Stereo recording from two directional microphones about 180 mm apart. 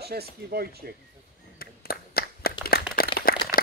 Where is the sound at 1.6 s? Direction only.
55° left (ahead or behind).